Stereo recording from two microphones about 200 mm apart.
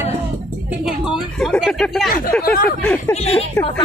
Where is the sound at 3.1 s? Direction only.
30° left (ahead or behind).